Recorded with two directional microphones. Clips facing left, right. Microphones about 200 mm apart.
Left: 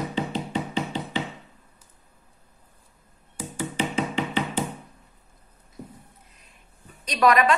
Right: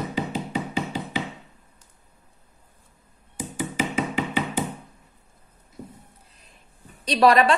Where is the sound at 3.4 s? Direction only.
15° right (ahead or behind).